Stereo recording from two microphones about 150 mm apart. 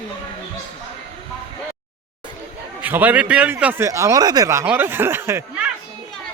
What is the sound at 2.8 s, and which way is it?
Speech, 10° right (ahead or behind).